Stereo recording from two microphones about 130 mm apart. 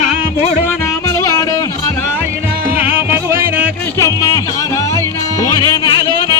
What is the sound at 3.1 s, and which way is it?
Music, 15° right (ahead or behind).